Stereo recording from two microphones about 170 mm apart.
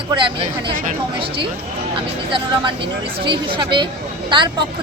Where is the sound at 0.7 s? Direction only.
50° right (ahead or behind).